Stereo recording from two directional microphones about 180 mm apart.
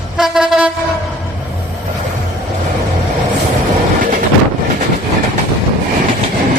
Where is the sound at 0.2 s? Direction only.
Centre (ahead or behind).